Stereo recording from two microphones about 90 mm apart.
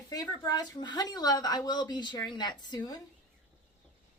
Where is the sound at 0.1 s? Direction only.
45° left (ahead or behind).